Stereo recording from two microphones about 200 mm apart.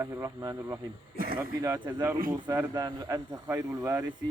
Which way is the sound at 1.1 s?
50° right (ahead or behind).